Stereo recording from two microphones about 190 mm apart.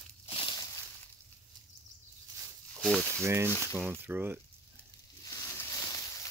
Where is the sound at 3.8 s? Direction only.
10° right (ahead or behind).